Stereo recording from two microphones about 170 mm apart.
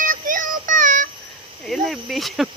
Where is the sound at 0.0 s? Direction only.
50° right (ahead or behind).